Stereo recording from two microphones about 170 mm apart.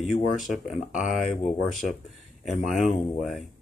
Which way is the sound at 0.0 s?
5° right (ahead or behind).